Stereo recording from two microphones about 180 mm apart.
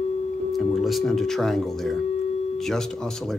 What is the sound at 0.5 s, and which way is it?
Speech, centre (ahead or behind).